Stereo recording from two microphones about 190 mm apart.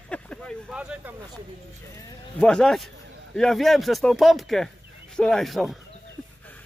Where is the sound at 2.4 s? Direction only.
5° left (ahead or behind).